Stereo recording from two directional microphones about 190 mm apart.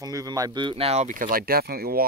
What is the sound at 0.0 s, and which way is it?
Speech, 20° right (ahead or behind).